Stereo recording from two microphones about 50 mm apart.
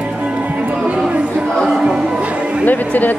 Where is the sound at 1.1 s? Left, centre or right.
Right.